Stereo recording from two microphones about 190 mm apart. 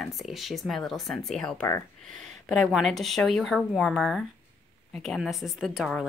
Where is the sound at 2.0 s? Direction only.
Centre (ahead or behind).